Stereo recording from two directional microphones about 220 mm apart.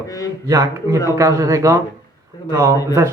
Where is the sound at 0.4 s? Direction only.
15° right (ahead or behind).